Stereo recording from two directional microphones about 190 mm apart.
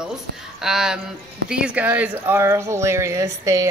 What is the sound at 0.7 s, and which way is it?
Speech, 5° right (ahead or behind).